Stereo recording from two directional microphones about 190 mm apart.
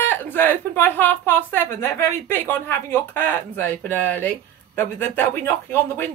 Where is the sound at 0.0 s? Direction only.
10° left (ahead or behind).